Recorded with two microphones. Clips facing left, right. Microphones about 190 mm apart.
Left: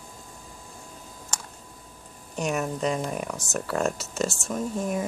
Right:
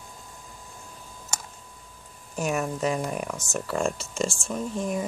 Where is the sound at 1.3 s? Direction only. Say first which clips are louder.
Right 1 dB; 10° right (ahead or behind).